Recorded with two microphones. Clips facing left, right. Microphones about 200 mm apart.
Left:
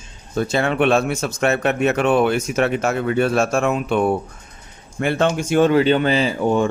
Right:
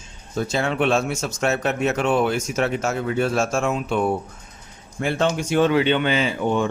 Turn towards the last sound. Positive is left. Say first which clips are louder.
# left 3 dB
turn(degrees=40)  # may be behind; listen again after turning